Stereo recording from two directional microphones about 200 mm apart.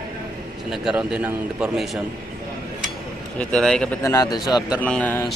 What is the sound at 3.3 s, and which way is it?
Speech, 5° left (ahead or behind).